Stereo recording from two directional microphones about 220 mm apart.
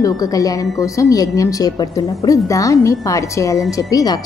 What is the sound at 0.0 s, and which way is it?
Speech, 15° left (ahead or behind).